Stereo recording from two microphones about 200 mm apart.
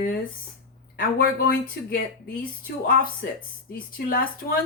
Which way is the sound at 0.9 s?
45° left (ahead or behind).